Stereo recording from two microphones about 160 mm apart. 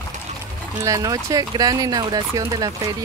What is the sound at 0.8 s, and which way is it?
Speech, 20° right (ahead or behind).